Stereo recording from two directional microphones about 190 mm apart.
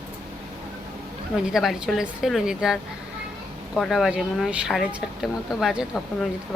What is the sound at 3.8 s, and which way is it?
A woman's voice, centre (ahead or behind).